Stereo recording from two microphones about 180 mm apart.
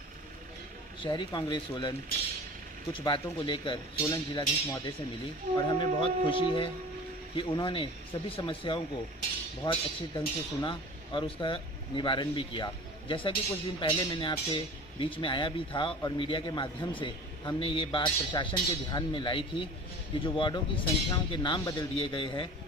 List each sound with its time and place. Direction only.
1.0 s speech: 25° left (ahead or behind)